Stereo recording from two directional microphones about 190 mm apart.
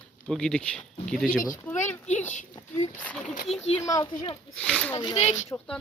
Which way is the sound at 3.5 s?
35° left (ahead or behind).